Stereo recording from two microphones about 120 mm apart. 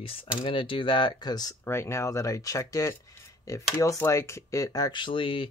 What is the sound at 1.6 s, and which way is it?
Speech, 20° left (ahead or behind).